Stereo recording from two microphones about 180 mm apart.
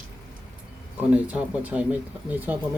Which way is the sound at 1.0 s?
10° right (ahead or behind).